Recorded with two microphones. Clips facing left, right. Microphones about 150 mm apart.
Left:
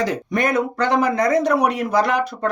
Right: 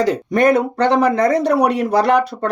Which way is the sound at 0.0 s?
35° right (ahead or behind).